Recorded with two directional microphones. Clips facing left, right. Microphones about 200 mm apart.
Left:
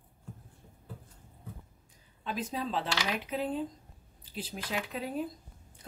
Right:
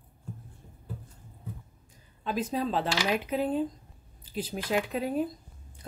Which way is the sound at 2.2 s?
45° right (ahead or behind).